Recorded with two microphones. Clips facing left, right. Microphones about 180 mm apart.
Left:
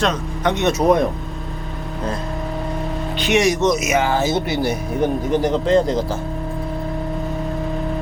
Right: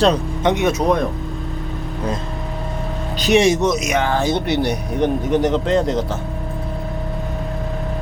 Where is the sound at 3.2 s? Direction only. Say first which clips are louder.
Right 3 dB; 30° right (ahead or behind).